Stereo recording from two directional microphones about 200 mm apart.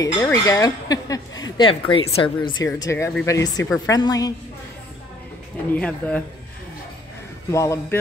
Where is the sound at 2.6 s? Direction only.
15° left (ahead or behind).